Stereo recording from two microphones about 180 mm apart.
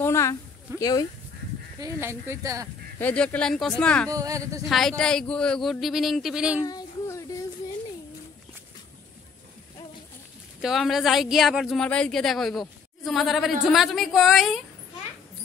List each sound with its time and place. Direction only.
0.0 s a sound: 15° left (ahead or behind)
0.7 s speech: 20° left (ahead or behind)
1.8 s speech: 15° right (ahead or behind)
3.0 s speech: 10° left (ahead or behind)
4.1 s speech: 20° right (ahead or behind)
4.6 s speech: centre (ahead or behind)
6.6 s a sound: 20° left (ahead or behind)
10.6 s speech: centre (ahead or behind)